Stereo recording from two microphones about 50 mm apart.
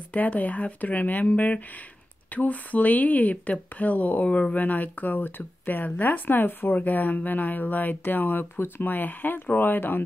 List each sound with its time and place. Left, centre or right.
0.1 s speech: left